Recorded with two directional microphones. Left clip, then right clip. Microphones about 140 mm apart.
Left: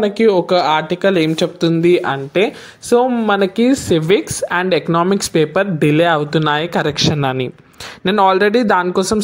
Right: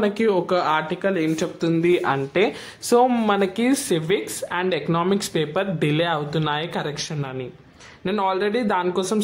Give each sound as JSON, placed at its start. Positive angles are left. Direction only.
{"t": 0.0, "sound": "speech", "side_deg": 35}
{"t": 1.0, "sound": "speech", "side_deg": 60}
{"t": 2.0, "sound": "speech", "side_deg": 25}
{"t": 3.3, "sound": "speech", "side_deg": 35}
{"t": 4.1, "sound": "speech", "side_deg": 50}
{"t": 7.2, "sound": "a man's voice", "side_deg": 80}
{"t": 8.0, "sound": "speech", "side_deg": 55}